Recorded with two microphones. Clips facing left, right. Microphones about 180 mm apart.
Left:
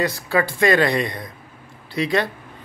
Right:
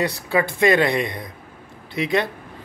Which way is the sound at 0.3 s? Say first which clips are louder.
Right 1 dB; 20° right (ahead or behind).